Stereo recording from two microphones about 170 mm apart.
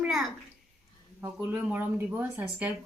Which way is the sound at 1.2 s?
15° right (ahead or behind).